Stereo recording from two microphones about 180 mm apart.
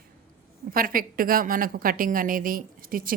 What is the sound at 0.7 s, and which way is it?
A woman's voice, 55° right (ahead or behind).